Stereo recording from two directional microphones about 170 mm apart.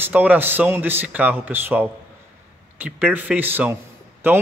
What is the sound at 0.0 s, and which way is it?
A man's voice, 10° right (ahead or behind).